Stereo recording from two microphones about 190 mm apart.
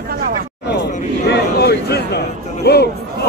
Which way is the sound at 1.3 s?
60° left (ahead or behind).